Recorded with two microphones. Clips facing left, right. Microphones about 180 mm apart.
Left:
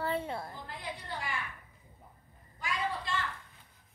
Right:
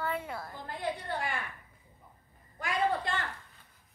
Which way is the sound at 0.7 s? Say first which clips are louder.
Right 7 dB; 50° right (ahead or behind).